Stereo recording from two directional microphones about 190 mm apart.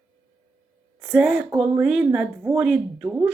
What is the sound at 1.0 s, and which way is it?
Speech, 5° right (ahead or behind).